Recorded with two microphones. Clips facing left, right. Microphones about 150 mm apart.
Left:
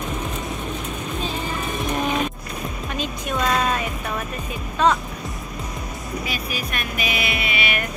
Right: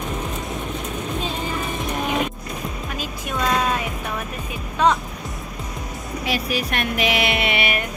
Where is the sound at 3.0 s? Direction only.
10° right (ahead or behind).